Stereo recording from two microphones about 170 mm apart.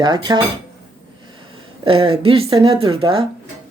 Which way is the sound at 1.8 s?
30° right (ahead or behind).